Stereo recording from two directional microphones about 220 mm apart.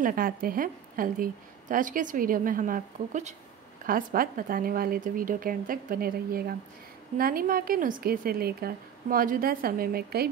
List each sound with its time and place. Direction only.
0.0 s a woman's voice: 40° right (ahead or behind)